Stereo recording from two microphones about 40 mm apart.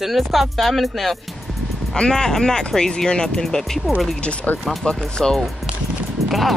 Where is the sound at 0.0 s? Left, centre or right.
Centre.